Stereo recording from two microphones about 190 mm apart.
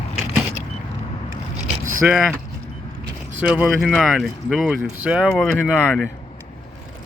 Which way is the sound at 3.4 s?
5° right (ahead or behind).